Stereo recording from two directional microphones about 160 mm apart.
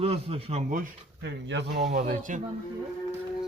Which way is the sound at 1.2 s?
90° right.